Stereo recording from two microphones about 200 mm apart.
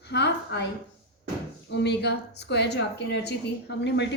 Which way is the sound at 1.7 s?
60° left (ahead or behind).